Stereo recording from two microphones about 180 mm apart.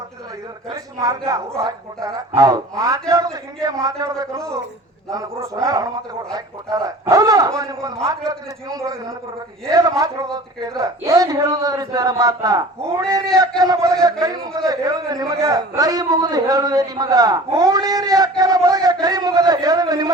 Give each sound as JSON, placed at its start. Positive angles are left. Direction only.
{"t": 0.7, "sound": "a man's voice", "side_deg": -20}
{"t": 9.6, "sound": "a man's voice", "side_deg": -20}